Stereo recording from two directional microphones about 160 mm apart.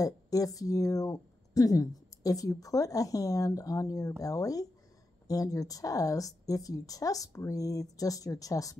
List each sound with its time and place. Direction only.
0.0 s speech: 20° left (ahead or behind)